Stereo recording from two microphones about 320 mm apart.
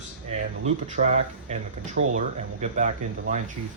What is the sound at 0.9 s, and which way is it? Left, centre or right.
Speech, right.